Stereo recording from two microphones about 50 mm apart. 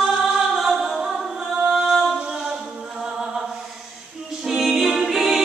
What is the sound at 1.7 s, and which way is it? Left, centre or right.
Music, centre.